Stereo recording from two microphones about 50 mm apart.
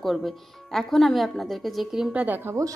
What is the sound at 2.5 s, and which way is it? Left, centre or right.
Speech, right.